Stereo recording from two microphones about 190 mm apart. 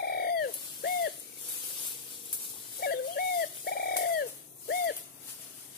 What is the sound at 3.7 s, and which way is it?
Bird, 55° left (ahead or behind).